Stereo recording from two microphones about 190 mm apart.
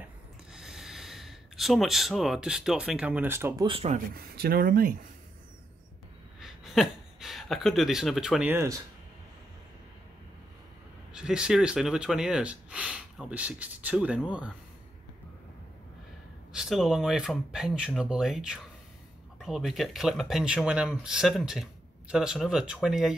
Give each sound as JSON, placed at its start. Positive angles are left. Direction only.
{"t": 0.5, "sound": "speech", "side_deg": -5}
{"t": 3.6, "sound": "speech", "side_deg": -30}
{"t": 4.1, "sound": "speech", "side_deg": -50}
{"t": 6.4, "sound": "speech", "side_deg": 0}
{"t": 11.1, "sound": "speech", "side_deg": -5}
{"t": 16.5, "sound": "speech", "side_deg": 0}